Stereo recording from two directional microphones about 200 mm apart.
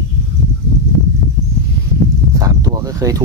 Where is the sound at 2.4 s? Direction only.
20° right (ahead or behind).